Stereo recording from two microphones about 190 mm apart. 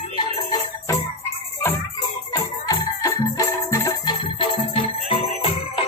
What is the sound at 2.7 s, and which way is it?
Music, 15° left (ahead or behind).